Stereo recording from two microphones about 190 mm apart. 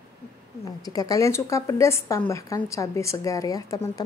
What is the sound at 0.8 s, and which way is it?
Speech, 20° left (ahead or behind).